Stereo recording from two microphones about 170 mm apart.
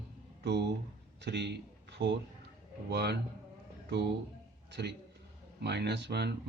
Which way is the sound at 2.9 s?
80° right.